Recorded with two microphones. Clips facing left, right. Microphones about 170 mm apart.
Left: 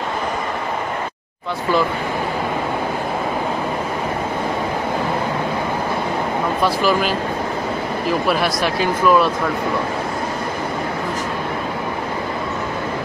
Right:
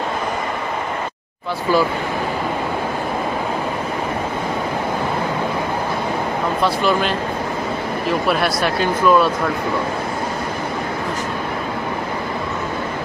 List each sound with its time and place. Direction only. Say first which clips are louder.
6.8 s speech: even; 5° left (ahead or behind)
8.3 s speech: even; centre (ahead or behind)